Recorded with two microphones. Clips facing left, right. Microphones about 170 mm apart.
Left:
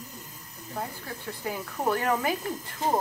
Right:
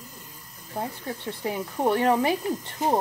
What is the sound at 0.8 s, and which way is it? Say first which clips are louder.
Speech: right 4 dB; 25° right (ahead or behind).